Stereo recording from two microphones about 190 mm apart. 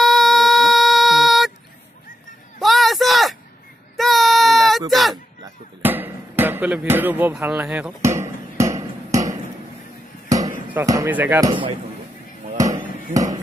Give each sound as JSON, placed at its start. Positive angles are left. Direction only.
{"t": 0.0, "sound": "a sound", "side_deg": 0}
{"t": 2.6, "sound": "a sound", "side_deg": 0}
{"t": 5.8, "sound": "hammer", "side_deg": -10}
{"t": 10.7, "sound": "speech", "side_deg": -15}
{"t": 11.4, "sound": "speech", "side_deg": -25}
{"t": 13.1, "sound": "speech", "side_deg": -20}